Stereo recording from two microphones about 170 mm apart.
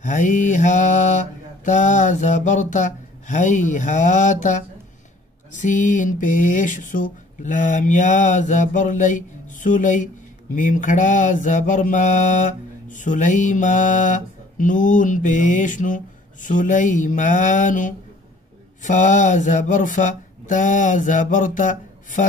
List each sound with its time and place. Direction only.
0.0 s mantra: 50° left (ahead or behind)